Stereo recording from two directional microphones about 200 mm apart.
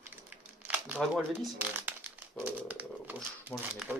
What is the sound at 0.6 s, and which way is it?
Speech, 5° right (ahead or behind).